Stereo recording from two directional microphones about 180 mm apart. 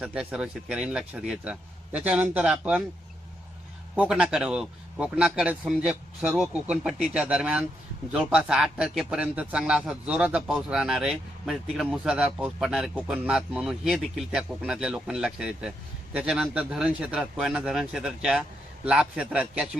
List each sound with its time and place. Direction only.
0.0 s a man's voice: 5° right (ahead or behind)
3.9 s a man's voice: 5° right (ahead or behind)